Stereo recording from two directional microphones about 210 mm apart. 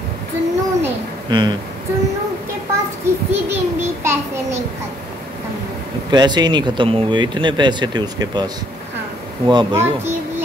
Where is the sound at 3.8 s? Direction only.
10° right (ahead or behind).